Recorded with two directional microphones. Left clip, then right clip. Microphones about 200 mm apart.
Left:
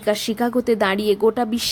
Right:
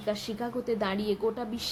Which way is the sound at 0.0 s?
45° left (ahead or behind).